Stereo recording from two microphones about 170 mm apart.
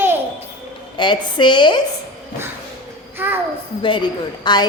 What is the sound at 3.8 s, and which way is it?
Speech, 30° left (ahead or behind).